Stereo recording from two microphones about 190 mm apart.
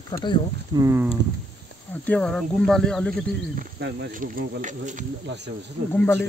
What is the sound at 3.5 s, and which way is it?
Speech, 55° right (ahead or behind).